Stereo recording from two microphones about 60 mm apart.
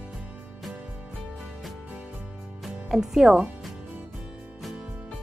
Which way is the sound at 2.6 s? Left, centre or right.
Centre.